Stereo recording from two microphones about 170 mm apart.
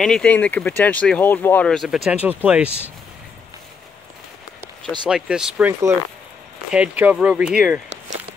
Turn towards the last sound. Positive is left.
turn(degrees=-5)  # may be behind; listen again after turning